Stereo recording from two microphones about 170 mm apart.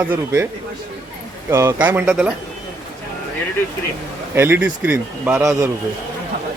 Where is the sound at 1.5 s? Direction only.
15° right (ahead or behind).